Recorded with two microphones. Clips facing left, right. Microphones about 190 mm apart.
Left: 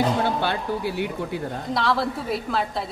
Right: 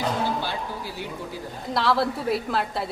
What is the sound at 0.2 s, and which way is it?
Speech, 60° left (ahead or behind).